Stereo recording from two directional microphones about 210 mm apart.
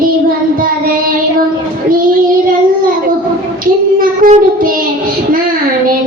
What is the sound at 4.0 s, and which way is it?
Child singing, 40° right (ahead or behind).